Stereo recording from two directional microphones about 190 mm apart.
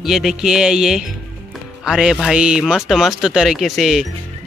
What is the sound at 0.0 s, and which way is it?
Speech, centre (ahead or behind).